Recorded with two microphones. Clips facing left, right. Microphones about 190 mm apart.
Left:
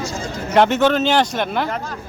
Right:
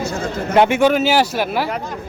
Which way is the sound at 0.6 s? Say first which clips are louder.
Right 1 dB; 10° right (ahead or behind).